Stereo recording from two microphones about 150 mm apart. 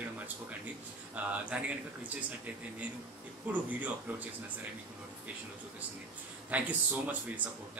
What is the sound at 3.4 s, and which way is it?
Speech, 10° right (ahead or behind).